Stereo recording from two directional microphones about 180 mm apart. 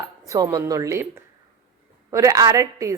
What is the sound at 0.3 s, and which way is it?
A woman's voice, 20° right (ahead or behind).